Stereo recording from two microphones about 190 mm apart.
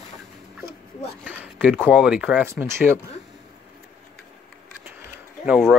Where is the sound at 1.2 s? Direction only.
5° right (ahead or behind).